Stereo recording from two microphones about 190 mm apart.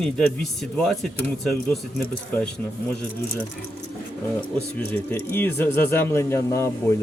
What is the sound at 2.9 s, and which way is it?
Speech, 5° left (ahead or behind).